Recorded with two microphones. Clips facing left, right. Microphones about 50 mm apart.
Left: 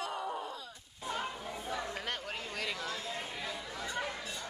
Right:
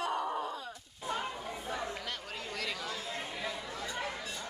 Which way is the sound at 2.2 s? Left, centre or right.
Left.